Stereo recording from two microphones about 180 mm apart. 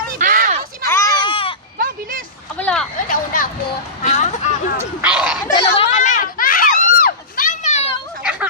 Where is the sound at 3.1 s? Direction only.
50° left (ahead or behind).